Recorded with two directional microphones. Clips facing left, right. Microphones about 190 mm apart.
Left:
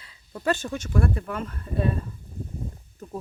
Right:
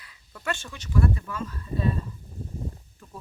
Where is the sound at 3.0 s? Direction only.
40° left (ahead or behind).